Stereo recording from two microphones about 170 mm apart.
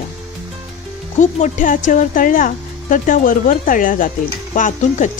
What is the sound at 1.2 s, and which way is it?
Speech, 45° left (ahead or behind).